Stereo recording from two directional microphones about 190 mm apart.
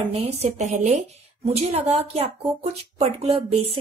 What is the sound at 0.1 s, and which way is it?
Speech, 35° right (ahead or behind).